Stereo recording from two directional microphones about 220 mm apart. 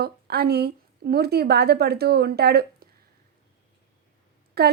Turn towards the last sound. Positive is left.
turn(degrees=-45)  # may be behind; listen again after turning